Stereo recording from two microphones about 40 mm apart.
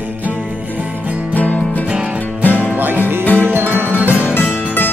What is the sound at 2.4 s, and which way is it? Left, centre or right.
Music, left.